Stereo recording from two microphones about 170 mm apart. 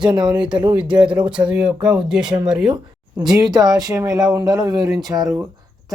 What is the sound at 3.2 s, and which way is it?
Speech, 25° right (ahead or behind).